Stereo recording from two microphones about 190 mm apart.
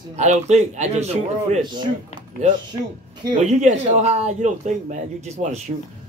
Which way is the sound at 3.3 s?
35° right (ahead or behind).